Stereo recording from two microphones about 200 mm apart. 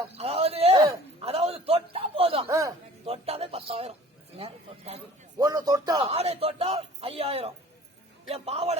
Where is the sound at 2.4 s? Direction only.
15° right (ahead or behind).